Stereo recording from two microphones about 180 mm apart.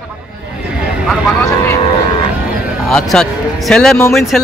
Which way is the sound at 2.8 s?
5° left (ahead or behind).